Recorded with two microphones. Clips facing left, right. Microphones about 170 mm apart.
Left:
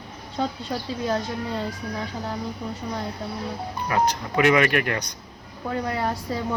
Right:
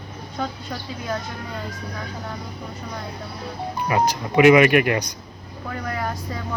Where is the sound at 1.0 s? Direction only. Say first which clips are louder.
Left 4 dB; 30° left (ahead or behind).